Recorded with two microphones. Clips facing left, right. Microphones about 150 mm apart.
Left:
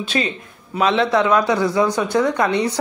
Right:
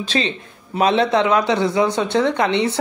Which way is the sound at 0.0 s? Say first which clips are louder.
Even; 35° right (ahead or behind).